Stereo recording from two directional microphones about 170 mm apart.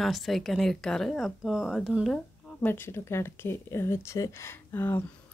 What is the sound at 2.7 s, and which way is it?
Speech, 15° left (ahead or behind).